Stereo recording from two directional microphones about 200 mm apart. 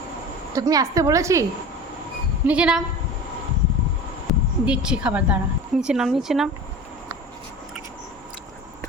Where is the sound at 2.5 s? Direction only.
5° right (ahead or behind).